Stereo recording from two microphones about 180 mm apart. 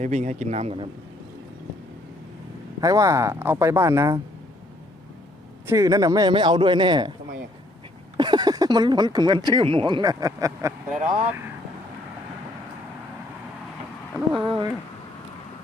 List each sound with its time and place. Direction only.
0.0 s speech: 40° right (ahead or behind)
2.8 s speech: 20° right (ahead or behind)
5.6 s speech: 20° right (ahead or behind)
8.1 s speech: 25° right (ahead or behind)
14.4 s speech: 30° right (ahead or behind)